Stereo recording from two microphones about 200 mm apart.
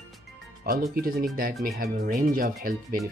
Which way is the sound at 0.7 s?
45° right (ahead or behind).